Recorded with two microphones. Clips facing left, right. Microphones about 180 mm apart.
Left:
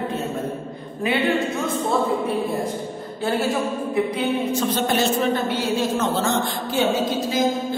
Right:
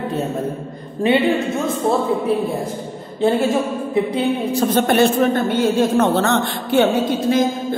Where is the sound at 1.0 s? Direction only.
30° right (ahead or behind).